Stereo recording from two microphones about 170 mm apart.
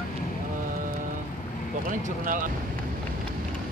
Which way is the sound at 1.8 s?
50° right (ahead or behind).